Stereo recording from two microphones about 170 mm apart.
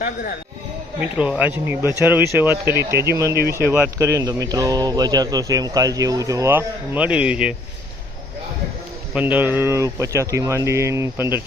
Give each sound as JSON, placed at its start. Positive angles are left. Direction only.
{"t": 0.0, "sound": "speech", "side_deg": 60}
{"t": 1.2, "sound": "speech", "side_deg": -10}
{"t": 9.1, "sound": "speech", "side_deg": -10}